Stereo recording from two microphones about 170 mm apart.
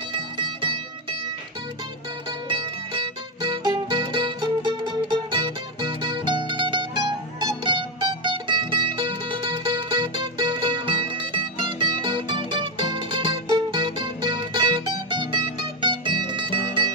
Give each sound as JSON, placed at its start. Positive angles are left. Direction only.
{"t": 0.1, "sound": "music", "side_deg": -25}
{"t": 2.4, "sound": "music", "side_deg": -30}